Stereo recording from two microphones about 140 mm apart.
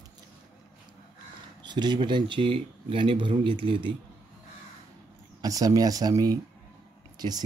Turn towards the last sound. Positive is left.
turn(degrees=-30)  # may be behind; listen again after turning